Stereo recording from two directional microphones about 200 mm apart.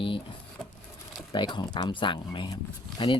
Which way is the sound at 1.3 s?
25° left (ahead or behind).